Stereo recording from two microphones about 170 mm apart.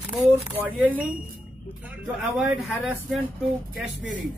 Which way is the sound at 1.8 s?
5° right (ahead or behind).